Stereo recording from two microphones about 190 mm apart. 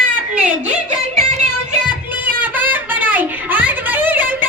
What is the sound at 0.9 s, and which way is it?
Music, 35° right (ahead or behind).